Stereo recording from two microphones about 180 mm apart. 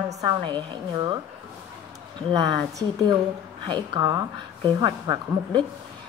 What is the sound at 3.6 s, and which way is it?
Speech, 25° right (ahead or behind).